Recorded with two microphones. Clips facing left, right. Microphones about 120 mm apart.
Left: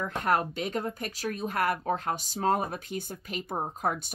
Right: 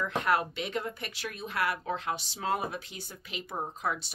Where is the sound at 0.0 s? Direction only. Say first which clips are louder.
Left 1 dB; 45° left (ahead or behind).